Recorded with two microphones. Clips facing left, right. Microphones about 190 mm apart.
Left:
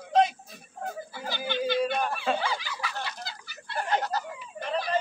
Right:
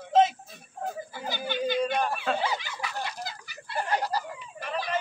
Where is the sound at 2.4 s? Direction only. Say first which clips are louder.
Right 1 dB; 20° right (ahead or behind).